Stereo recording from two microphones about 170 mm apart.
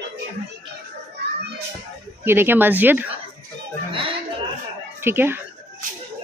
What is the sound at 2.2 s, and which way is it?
Speech, 15° right (ahead or behind).